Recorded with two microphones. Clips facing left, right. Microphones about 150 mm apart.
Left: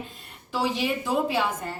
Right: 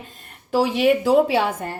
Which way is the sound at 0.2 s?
55° right (ahead or behind).